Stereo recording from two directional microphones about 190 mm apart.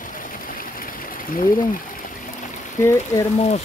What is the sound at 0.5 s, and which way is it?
Stream, 50° left (ahead or behind).